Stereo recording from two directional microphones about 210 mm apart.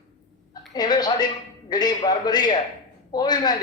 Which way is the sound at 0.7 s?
20° left (ahead or behind).